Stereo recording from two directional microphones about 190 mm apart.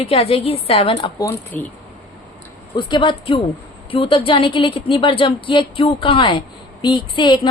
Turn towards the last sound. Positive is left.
turn(degrees=25)  # may be behind; listen again after turning